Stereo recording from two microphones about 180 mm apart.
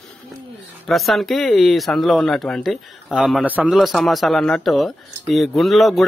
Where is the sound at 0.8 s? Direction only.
Centre (ahead or behind).